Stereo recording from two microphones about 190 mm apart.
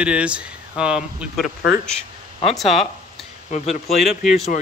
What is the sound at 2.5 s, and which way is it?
Speech, centre (ahead or behind).